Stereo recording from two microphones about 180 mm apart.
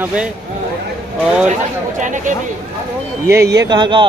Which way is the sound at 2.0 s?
45° right (ahead or behind).